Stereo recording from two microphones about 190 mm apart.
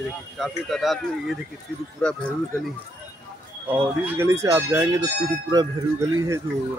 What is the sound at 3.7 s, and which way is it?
Speech, 15° right (ahead or behind).